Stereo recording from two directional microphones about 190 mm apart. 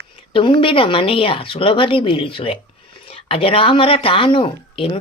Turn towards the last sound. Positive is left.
turn(degrees=30)  # may be behind; listen again after turning